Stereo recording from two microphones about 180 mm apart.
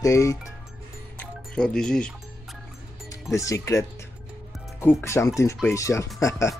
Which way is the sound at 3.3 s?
15° left (ahead or behind).